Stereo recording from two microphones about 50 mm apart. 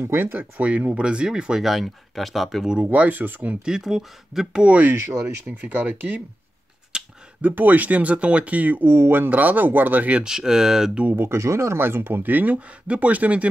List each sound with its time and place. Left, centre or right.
0.0 s speech: right
0.7 s speech: right
1.0 s speech: centre
1.6 s speech: centre
2.8 s speech: right
3.6 s speech: centre
4.6 s speech: right
6.9 s a sound: centre
7.4 s speech: right
8.8 s speech: right
10.2 s speech: centre
11.2 s speech: right
11.8 s speech: right